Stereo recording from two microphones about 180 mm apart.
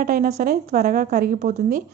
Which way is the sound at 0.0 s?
50° right (ahead or behind).